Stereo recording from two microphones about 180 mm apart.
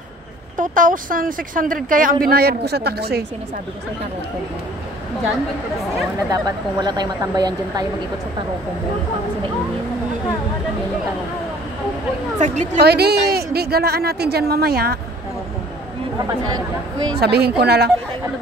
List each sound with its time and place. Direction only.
0.6 s a woman's voice: 45° right (ahead or behind); by 3.3 s 60° right (ahead or behind)
6.3 s speech: 20° right (ahead or behind)
12.4 s a woman's voice: 40° right (ahead or behind)
12.8 s a woman's voice: 65° right (ahead or behind)
17.2 s a woman's voice: 65° right (ahead or behind)